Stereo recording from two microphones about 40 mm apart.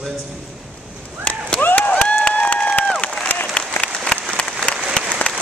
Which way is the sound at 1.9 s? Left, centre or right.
Left.